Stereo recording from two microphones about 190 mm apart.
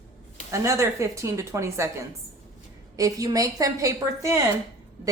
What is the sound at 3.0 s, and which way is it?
Speech, 20° right (ahead or behind).